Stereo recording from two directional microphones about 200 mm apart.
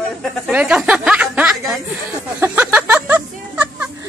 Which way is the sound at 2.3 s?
10° right (ahead or behind).